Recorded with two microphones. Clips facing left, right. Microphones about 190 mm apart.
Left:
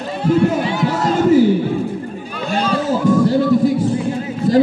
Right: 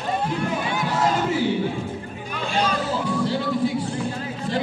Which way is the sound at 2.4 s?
45° left (ahead or behind).